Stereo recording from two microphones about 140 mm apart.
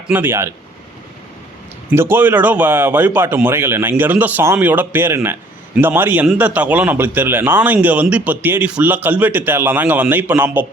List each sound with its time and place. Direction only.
0.1 s speech: 15° right (ahead or behind)
1.9 s speech: 15° right (ahead or behind)